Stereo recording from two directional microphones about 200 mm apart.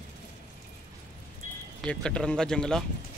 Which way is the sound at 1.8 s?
5° left (ahead or behind).